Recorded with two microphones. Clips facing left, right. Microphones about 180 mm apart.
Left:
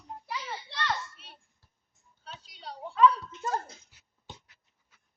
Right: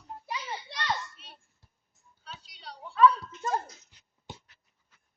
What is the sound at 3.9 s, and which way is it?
Dog, 10° left (ahead or behind).